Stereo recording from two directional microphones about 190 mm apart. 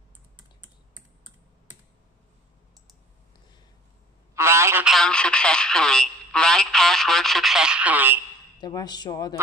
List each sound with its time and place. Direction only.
4.4 s telephone: 15° right (ahead or behind)
4.8 s speech: centre (ahead or behind)
8.5 s speech: 20° left (ahead or behind)